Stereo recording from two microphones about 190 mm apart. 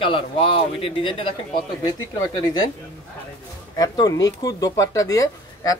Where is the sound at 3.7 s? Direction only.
20° left (ahead or behind).